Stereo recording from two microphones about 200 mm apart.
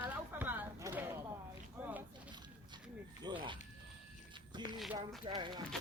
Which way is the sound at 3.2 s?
25° right (ahead or behind).